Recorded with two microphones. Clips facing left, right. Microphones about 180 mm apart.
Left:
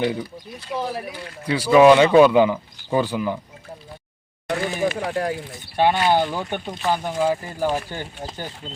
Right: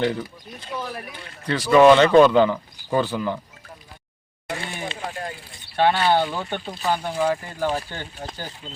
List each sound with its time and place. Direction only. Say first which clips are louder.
0.8 s speech: left 6 dB; 25° left (ahead or behind)
1.5 s speech: left 1 dB; 10° left (ahead or behind)
4.4 s a sound: left 8 dB; 75° left (ahead or behind)
4.9 s speech: left 8 dB; 70° left (ahead or behind)
5.7 s speech: left 1 dB; 15° left (ahead or behind)